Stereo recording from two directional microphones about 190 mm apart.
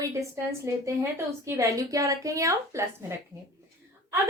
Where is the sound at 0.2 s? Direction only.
15° right (ahead or behind).